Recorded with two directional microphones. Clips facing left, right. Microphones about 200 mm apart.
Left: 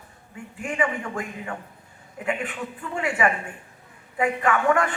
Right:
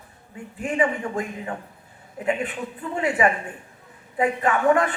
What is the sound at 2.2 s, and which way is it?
A man's voice, 35° right (ahead or behind).